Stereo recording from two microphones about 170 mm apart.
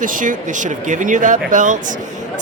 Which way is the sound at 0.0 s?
50° right (ahead or behind).